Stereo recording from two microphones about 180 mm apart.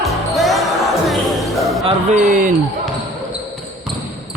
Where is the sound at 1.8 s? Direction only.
40° right (ahead or behind).